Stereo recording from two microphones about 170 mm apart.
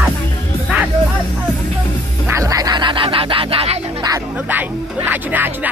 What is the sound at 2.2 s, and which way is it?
Music, 20° right (ahead or behind).